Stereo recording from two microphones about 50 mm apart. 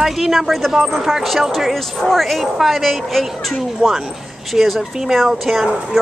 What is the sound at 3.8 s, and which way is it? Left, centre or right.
Speech, centre.